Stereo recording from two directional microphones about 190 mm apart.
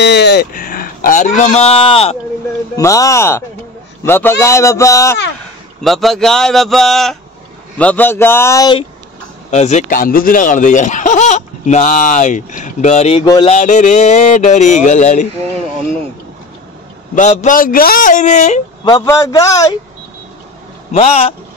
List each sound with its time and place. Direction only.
0.0 s speech: 65° left (ahead or behind); by 2.1 s 30° left (ahead or behind)
2.7 s a man's voice: 15° left (ahead or behind)
5.8 s a man's voice: centre (ahead or behind)
9.5 s speech: 40° left (ahead or behind)
13.6 s speech: 40° left (ahead or behind)
17.1 s a man's voice: 40° left (ahead or behind)
18.9 s a man's voice: 15° left (ahead or behind)
20.9 s speech: 35° left (ahead or behind)